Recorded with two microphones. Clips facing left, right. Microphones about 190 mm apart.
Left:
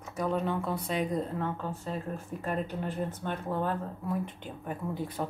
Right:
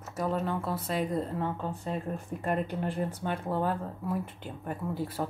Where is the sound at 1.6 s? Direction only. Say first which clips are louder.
Right 2 dB; 15° right (ahead or behind).